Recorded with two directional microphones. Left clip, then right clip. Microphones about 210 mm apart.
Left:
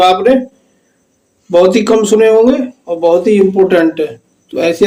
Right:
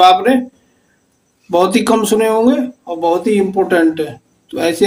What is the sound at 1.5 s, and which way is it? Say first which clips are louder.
Speech: left 4 dB; 20° right (ahead or behind).